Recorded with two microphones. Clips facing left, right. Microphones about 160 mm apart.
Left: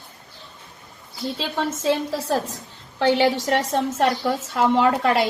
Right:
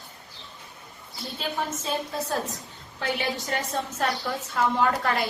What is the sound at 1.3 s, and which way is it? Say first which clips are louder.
Speech: left 2 dB; 85° left.